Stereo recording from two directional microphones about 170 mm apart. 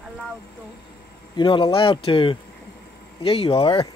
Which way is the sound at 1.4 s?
30° left (ahead or behind).